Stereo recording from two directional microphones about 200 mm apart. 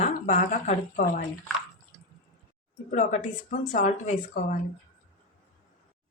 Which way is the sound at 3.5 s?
35° left (ahead or behind).